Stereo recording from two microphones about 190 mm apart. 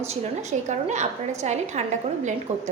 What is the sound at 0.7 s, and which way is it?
A woman's voice, 40° right (ahead or behind).